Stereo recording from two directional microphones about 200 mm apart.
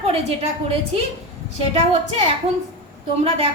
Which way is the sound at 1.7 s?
30° right (ahead or behind).